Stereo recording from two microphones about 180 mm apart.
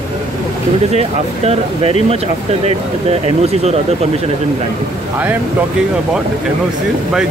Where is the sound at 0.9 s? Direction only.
35° right (ahead or behind).